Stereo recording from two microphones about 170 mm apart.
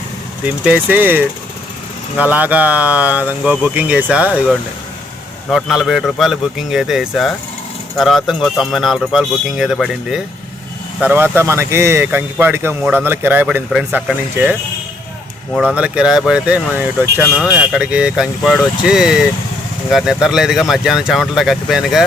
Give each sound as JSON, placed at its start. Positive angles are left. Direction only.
{"t": 0.4, "sound": "speech", "side_deg": -10}
{"t": 15.5, "sound": "speech", "side_deg": -5}